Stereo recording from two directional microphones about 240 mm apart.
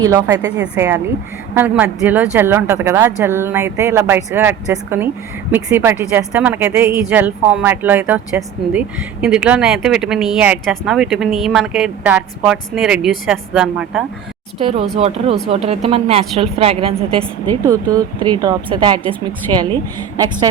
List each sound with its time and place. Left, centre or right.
0.0 s a woman's voice: centre
14.9 s a woman's voice: right
17.2 s a woman's voice: centre
17.6 s a woman's voice: centre